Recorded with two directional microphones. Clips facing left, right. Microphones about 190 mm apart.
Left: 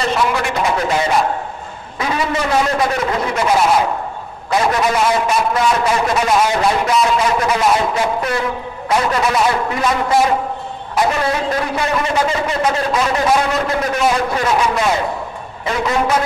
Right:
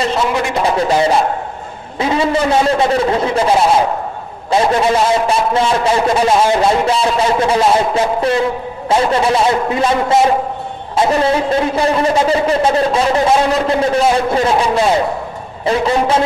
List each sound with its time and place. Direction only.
0.3 s a man's voice: 30° right (ahead or behind)